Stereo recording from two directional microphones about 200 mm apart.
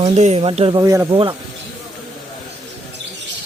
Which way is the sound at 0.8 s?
15° right (ahead or behind).